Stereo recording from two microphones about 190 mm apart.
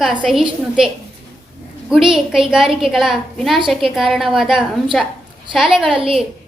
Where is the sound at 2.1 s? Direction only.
Centre (ahead or behind).